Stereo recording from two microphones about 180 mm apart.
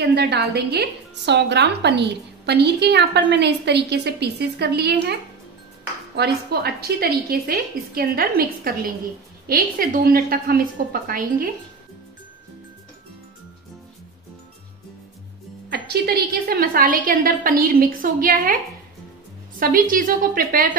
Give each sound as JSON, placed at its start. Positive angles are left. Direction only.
{"t": 0.0, "sound": "a woman's voice", "side_deg": -65}
{"t": 15.7, "sound": "a woman's voice", "side_deg": -60}
{"t": 19.6, "sound": "a woman's voice", "side_deg": -50}